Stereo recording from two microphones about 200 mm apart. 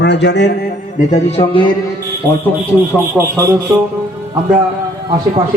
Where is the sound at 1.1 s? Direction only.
30° left (ahead or behind).